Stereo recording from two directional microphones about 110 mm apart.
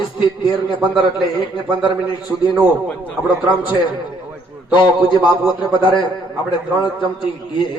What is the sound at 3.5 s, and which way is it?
Speech, 15° right (ahead or behind).